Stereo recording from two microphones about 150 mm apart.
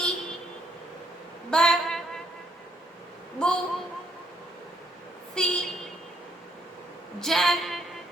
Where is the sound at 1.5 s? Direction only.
5° left (ahead or behind).